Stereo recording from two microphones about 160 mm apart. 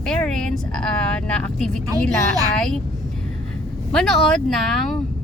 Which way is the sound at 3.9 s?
Centre (ahead or behind).